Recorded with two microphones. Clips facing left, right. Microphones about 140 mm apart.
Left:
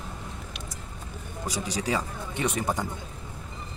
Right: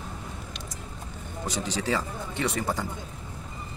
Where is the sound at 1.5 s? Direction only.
10° left (ahead or behind).